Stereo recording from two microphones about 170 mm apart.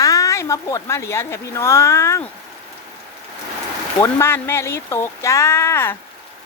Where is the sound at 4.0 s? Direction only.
15° left (ahead or behind).